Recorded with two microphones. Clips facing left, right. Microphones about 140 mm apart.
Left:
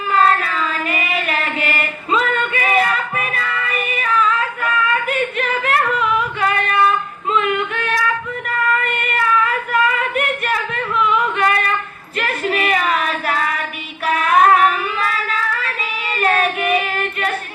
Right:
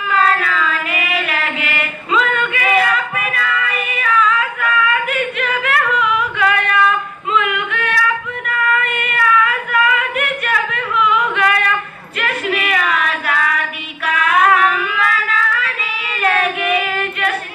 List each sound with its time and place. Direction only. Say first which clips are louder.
0.1 s child singing: left 1 dB; 35° left (ahead or behind)
2.1 s female singing: right 1 dB; 35° left (ahead or behind)
7.3 s yodeling: even; 35° left (ahead or behind)
8.4 s child singing: right 1 dB; 35° left (ahead or behind)
10.0 s singing: left 1 dB; 35° left (ahead or behind)
11.3 s child singing: right 1 dB; 40° left (ahead or behind)
12.2 s female singing: even; 35° left (ahead or behind)
14.0 s child singing: left 1 dB; 35° left (ahead or behind)
16.2 s female singing: even; 35° left (ahead or behind)